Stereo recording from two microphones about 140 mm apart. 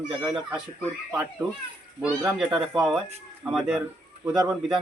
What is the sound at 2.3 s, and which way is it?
Speech, 5° right (ahead or behind).